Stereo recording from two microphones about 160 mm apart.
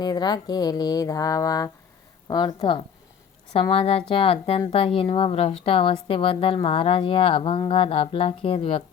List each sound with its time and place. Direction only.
0.0 s a woman's voice: 25° left (ahead or behind)